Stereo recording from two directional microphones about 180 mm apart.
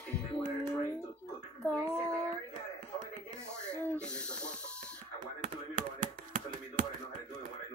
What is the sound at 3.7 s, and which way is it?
Speech, 10° left (ahead or behind).